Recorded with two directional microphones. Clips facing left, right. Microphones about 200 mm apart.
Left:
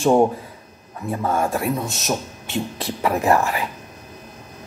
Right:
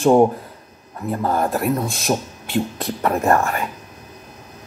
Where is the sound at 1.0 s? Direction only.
Centre (ahead or behind).